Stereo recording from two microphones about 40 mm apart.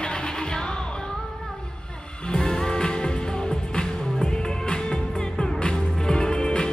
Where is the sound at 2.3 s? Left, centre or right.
Centre.